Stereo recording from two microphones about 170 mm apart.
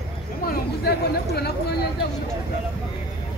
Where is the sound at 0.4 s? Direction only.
65° left (ahead or behind).